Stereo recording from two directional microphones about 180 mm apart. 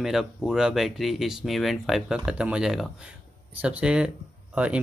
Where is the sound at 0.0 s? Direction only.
Centre (ahead or behind).